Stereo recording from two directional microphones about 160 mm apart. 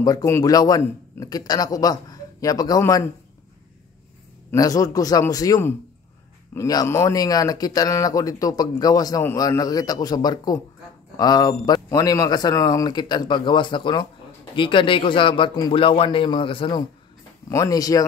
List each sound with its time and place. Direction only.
0.0 s speech: 20° left (ahead or behind)
4.5 s a man's voice: 20° left (ahead or behind)
17.5 s speech: 20° left (ahead or behind)